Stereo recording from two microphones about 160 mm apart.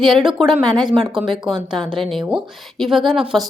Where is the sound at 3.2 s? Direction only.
30° right (ahead or behind).